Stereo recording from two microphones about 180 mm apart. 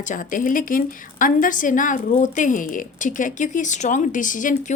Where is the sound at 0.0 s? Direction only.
45° left (ahead or behind).